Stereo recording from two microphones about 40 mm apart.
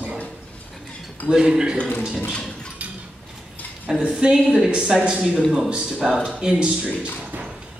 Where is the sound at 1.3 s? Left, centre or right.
Centre.